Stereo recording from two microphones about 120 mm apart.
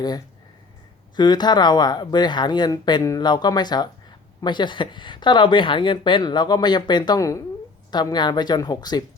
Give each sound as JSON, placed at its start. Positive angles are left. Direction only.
{"t": 1.1, "sound": "speech", "side_deg": 35}